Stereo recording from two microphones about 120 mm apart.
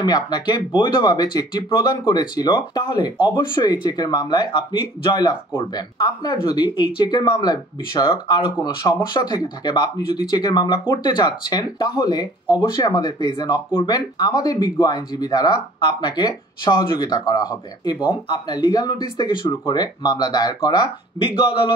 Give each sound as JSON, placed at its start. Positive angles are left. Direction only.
{"t": 0.0, "sound": "speech", "side_deg": 35}
{"t": 21.4, "sound": "a man's voice", "side_deg": 45}